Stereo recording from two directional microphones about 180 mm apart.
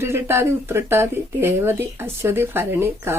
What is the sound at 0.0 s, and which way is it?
Speech, 15° right (ahead or behind).